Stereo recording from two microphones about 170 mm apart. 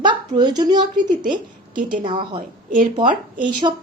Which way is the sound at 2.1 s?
30° right (ahead or behind).